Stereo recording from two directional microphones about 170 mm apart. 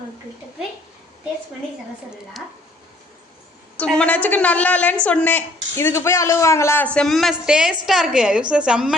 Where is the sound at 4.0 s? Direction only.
10° left (ahead or behind).